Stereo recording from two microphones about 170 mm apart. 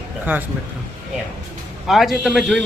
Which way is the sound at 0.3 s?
10° right (ahead or behind).